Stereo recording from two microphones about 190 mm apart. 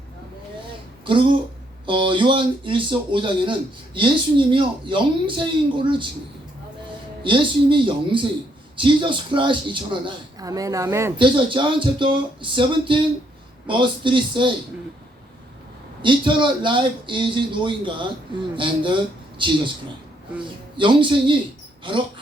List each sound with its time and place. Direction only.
1.0 s speech: 25° right (ahead or behind)
7.2 s speech: 25° right (ahead or behind)
11.2 s speech: 25° right (ahead or behind)
16.0 s speech: 25° right (ahead or behind)
20.7 s speech: 25° right (ahead or behind)